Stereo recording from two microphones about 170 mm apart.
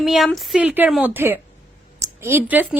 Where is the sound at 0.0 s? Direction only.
Centre (ahead or behind).